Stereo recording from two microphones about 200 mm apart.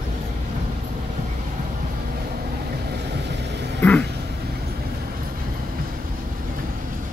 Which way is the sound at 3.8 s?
5° left (ahead or behind).